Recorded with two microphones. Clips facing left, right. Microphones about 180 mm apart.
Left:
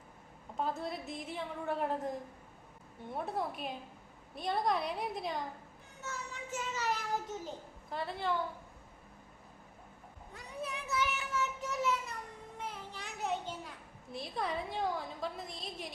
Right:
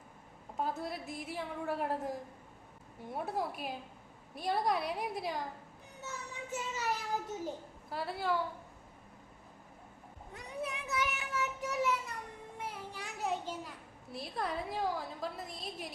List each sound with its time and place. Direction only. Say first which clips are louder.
0.6 s a woman's voice: even; 5° right (ahead or behind)
6.0 s child singing: left 1 dB; 15° right (ahead or behind)
7.4 s a woman's voice: right 3 dB; 5° right (ahead or behind)
10.3 s child singing: right 2 dB; 20° right (ahead or behind)
12.5 s a sound: right 1 dB; 10° right (ahead or behind)